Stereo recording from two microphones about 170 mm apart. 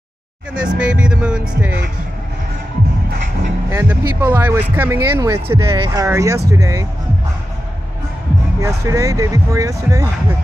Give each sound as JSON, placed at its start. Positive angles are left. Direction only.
{"t": 0.6, "sound": "speech", "side_deg": -5}
{"t": 3.7, "sound": "speech", "side_deg": -10}
{"t": 8.5, "sound": "speech", "side_deg": -20}